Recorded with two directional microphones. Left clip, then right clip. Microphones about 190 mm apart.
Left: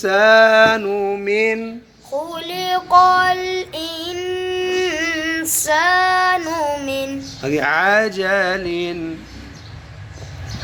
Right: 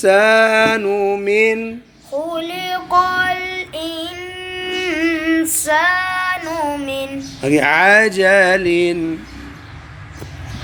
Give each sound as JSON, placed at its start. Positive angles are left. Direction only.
{"t": 0.0, "sound": "music", "side_deg": -30}
{"t": 2.3, "sound": "child singing", "side_deg": 75}
{"t": 6.8, "sound": "child singing", "side_deg": 90}
{"t": 7.4, "sound": "music", "side_deg": -30}